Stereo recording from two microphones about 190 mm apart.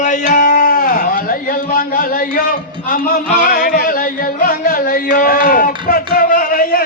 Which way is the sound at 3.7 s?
50° left (ahead or behind).